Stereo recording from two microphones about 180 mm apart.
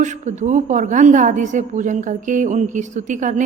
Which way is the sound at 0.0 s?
40° right (ahead or behind).